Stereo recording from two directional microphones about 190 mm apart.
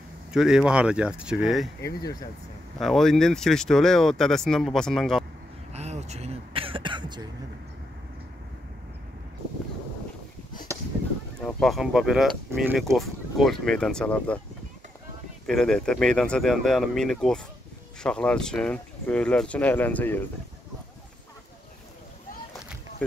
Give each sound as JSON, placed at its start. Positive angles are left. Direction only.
{"t": 0.3, "sound": "speech", "side_deg": -5}
{"t": 2.8, "sound": "speech", "side_deg": 0}
{"t": 5.7, "sound": "throat clearing", "side_deg": -35}
{"t": 11.4, "sound": "speech", "side_deg": 0}
{"t": 15.4, "sound": "speech", "side_deg": 0}